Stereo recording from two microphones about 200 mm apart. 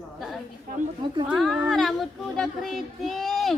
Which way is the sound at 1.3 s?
Centre (ahead or behind).